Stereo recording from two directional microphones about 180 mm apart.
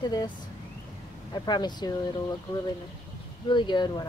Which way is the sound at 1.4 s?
25° left (ahead or behind).